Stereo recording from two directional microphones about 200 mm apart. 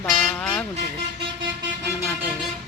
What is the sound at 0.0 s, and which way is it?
Vehicle, 5° left (ahead or behind).